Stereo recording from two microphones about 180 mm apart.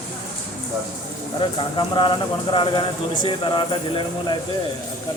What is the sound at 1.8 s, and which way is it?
Speech, 25° left (ahead or behind).